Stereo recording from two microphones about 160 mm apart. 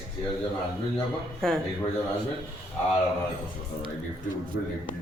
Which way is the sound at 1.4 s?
5° left (ahead or behind).